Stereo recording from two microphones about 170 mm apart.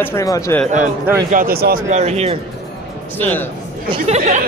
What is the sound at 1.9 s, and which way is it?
Speech, 40° right (ahead or behind).